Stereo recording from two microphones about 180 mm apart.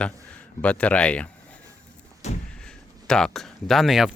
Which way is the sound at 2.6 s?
5° left (ahead or behind).